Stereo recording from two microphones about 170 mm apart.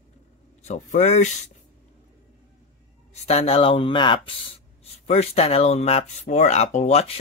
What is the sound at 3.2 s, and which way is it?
Speech, 35° left (ahead or behind).